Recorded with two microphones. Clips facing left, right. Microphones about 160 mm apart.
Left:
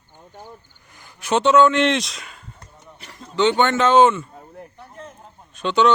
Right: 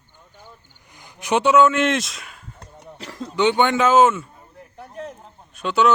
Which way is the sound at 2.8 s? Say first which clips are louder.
Right 7 dB; 90° right.